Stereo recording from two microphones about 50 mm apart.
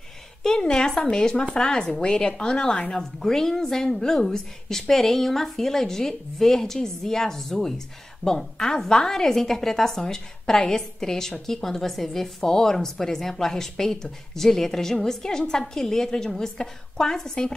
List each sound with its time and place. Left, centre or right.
0.4 s a woman's voice: centre